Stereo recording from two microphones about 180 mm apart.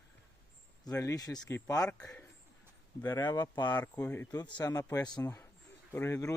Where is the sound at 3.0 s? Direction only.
20° left (ahead or behind).